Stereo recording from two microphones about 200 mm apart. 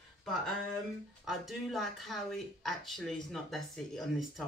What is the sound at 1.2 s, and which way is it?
Speech, centre (ahead or behind).